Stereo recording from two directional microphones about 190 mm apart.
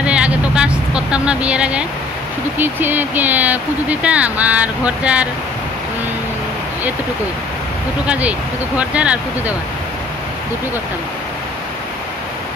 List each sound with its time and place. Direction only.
0.0 s vehicle: 5° right (ahead or behind)
2.5 s speech: 10° right (ahead or behind)
8.1 s speech: 5° right (ahead or behind)